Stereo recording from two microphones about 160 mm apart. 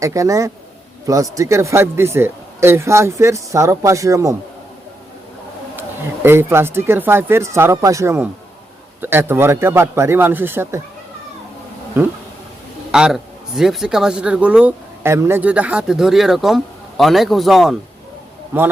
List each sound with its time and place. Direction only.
0.0 s speech: 20° right (ahead or behind)
6.2 s speech: 15° right (ahead or behind)
12.9 s speech: 5° right (ahead or behind)
18.5 s speech: 10° right (ahead or behind)